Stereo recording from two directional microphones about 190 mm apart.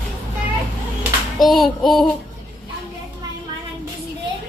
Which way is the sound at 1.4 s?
Centre (ahead or behind).